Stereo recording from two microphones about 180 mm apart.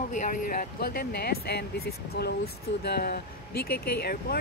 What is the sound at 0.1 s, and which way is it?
Speech, 45° left (ahead or behind).